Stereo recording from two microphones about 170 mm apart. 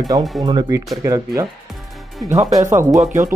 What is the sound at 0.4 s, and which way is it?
Speech, 25° right (ahead or behind).